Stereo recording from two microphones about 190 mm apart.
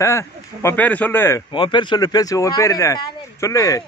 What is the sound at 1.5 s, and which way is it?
Speech, 25° left (ahead or behind).